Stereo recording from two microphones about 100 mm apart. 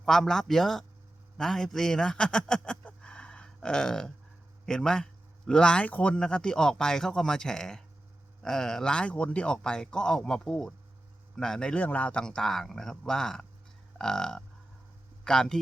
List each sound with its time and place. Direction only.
0.0 s a man's voice: 5° left (ahead or behind)